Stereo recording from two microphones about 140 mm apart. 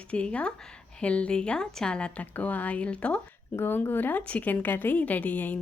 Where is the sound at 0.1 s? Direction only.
10° left (ahead or behind).